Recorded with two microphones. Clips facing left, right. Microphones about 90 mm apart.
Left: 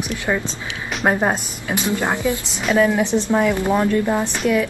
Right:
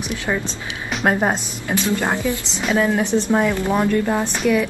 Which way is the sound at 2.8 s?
20° right (ahead or behind).